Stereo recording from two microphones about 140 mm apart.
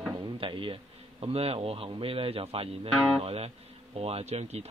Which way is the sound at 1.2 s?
45° right (ahead or behind).